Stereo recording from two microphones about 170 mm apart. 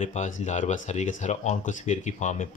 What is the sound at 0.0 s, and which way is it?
Speech, 45° left (ahead or behind).